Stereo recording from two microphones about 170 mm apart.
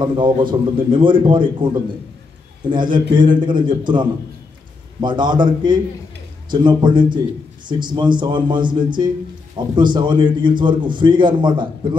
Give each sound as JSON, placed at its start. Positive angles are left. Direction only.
{"t": 0.0, "sound": "a man's voice", "side_deg": -30}
{"t": 2.7, "sound": "a man's voice", "side_deg": -25}